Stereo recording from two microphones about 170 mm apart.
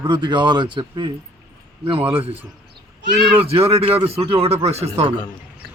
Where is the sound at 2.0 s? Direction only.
10° right (ahead or behind).